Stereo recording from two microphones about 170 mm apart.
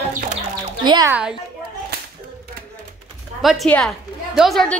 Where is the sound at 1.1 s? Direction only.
5° right (ahead or behind).